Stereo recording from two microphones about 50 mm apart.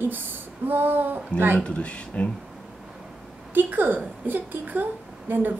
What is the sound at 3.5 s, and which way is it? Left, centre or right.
A woman's voice, right.